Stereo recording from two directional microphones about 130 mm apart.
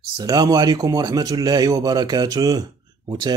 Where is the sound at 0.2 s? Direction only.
30° right (ahead or behind).